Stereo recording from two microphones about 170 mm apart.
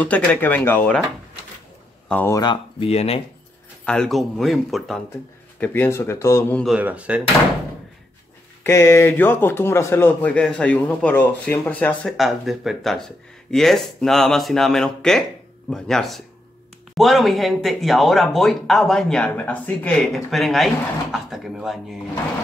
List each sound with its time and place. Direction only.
0.0 s a man's voice: 10° left (ahead or behind)
2.0 s speech: 10° left (ahead or behind)
2.4 s speech: 30° left (ahead or behind)
3.8 s speech: 5° left (ahead or behind)
5.6 s a man's voice: 10° left (ahead or behind)
6.6 s speech: 5° right (ahead or behind)
8.6 s a man's voice: 15° left (ahead or behind); by 21.7 s centre (ahead or behind)